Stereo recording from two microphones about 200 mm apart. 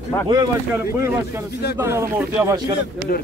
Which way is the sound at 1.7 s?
10° right (ahead or behind).